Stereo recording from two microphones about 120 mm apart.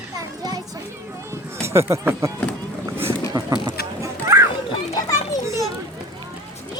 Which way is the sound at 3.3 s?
35° right (ahead or behind).